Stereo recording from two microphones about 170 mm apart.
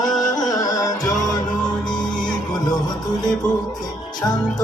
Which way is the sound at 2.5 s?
25° left (ahead or behind).